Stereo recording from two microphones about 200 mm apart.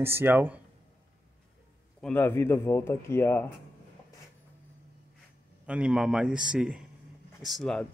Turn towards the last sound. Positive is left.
turn(degrees=0)  # may be behind; listen again after turning